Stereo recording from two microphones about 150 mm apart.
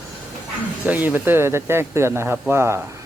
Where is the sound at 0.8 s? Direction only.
10° right (ahead or behind).